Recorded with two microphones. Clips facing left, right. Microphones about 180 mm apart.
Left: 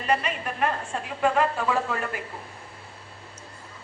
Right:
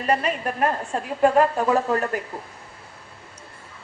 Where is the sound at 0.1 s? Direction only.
40° right (ahead or behind).